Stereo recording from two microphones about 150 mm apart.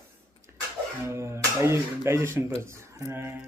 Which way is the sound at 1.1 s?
15° right (ahead or behind).